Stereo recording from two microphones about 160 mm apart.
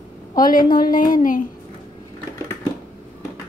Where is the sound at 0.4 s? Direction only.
60° left (ahead or behind).